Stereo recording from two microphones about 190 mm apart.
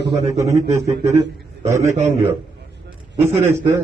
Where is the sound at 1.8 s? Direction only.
40° right (ahead or behind).